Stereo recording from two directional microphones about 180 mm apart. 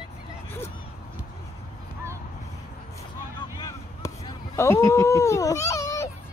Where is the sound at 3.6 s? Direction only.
20° left (ahead or behind).